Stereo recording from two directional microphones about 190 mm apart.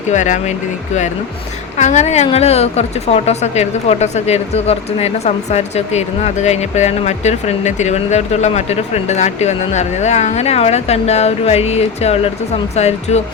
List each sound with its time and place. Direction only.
0.1 s a woman's voice: 40° left (ahead or behind)
1.8 s a woman's voice: 35° left (ahead or behind)